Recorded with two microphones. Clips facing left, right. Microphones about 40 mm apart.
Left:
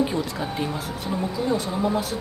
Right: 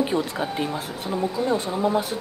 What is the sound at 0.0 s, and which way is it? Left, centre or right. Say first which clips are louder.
Speech: right 1 dB; right.